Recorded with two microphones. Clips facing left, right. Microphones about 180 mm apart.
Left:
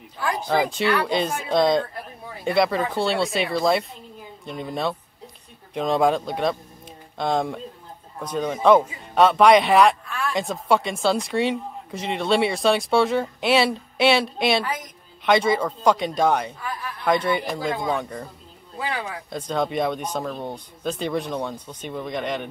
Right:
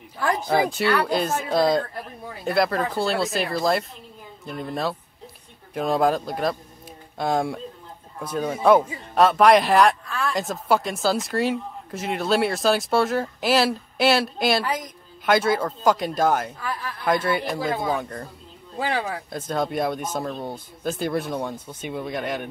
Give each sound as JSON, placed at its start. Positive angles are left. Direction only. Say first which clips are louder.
{"t": 0.5, "sound": "speech", "louder": "left 1 dB", "side_deg": -10}
{"t": 18.8, "sound": "speech", "louder": "right 3 dB", "side_deg": -30}
{"t": 19.3, "sound": "speech", "louder": "left 2 dB", "side_deg": -5}